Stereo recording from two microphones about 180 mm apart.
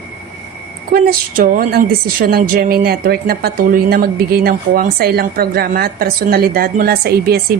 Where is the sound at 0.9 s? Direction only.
50° right (ahead or behind).